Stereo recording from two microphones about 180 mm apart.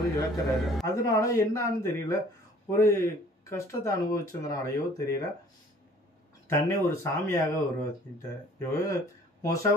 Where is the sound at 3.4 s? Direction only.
15° left (ahead or behind).